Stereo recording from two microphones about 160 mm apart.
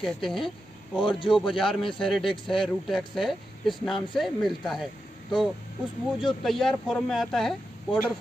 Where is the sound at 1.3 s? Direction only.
Centre (ahead or behind).